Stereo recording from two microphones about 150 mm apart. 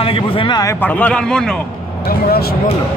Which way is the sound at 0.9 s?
10° left (ahead or behind).